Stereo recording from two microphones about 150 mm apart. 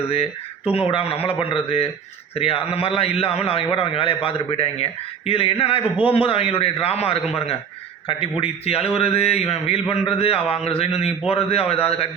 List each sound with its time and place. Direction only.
0.7 s a man's voice: 40° left (ahead or behind)